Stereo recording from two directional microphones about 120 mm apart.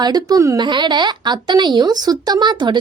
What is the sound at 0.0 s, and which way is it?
A woman's voice, 35° right (ahead or behind).